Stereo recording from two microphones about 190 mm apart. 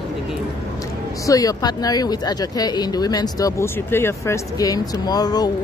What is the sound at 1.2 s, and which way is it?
Speech, 20° left (ahead or behind).